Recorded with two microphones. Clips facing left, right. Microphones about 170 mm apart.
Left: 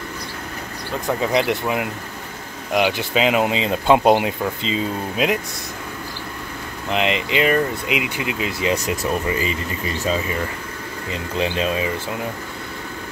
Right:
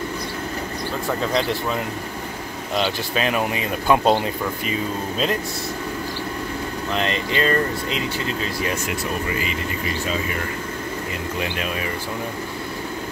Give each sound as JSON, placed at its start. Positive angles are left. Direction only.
{"t": 1.0, "sound": "speech", "side_deg": 15}
{"t": 6.9, "sound": "speech", "side_deg": 15}
{"t": 11.3, "sound": "speech", "side_deg": 25}